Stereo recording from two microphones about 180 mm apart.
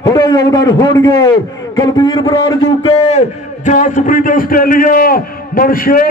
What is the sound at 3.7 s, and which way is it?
A man's voice, 45° left (ahead or behind).